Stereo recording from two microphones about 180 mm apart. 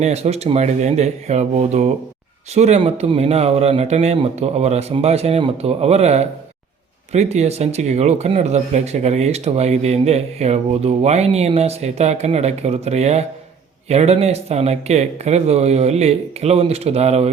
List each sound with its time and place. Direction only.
0.0 s speech: 35° right (ahead or behind)